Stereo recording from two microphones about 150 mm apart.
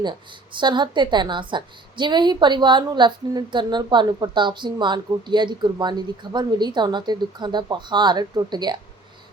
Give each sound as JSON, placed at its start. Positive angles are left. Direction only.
{"t": 0.0, "sound": "a woman's voice", "side_deg": -30}